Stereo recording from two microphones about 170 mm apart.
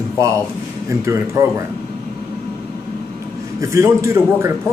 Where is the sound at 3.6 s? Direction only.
15° right (ahead or behind).